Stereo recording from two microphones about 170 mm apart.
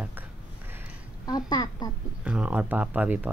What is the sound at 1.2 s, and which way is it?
Speech, 25° left (ahead or behind).